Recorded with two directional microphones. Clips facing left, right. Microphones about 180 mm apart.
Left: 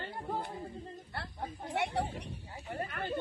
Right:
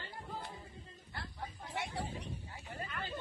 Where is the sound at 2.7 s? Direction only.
55° left (ahead or behind).